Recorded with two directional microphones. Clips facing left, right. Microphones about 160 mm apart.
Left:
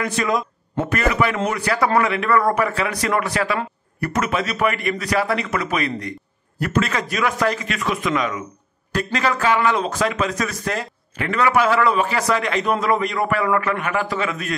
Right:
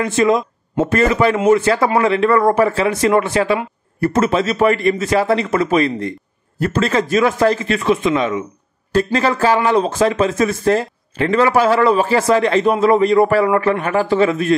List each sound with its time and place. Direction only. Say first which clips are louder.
0.0 s a man's voice: right 7 dB; 25° right (ahead or behind)